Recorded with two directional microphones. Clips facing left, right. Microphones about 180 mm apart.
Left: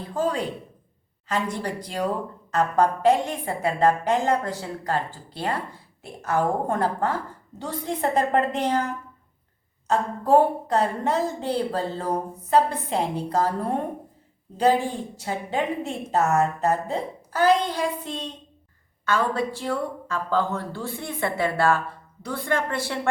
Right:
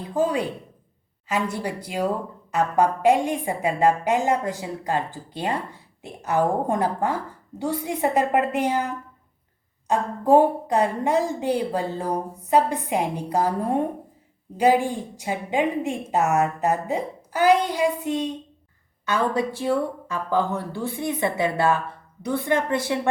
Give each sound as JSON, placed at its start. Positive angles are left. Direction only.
{"t": 0.1, "sound": "a woman's voice", "side_deg": -10}